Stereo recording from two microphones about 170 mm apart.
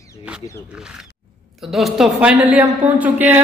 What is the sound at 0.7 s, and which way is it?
A man's voice, 5° right (ahead or behind).